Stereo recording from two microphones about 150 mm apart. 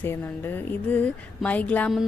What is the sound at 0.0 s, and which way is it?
A woman's voice, 15° left (ahead or behind).